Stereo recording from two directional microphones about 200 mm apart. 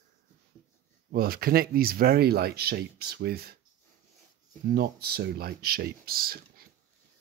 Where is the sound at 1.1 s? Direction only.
50° right (ahead or behind).